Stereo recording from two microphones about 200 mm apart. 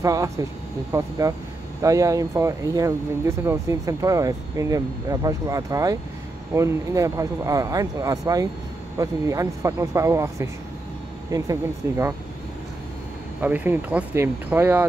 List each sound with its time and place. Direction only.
0.0 s speech: 15° right (ahead or behind)
13.4 s speech: 10° right (ahead or behind)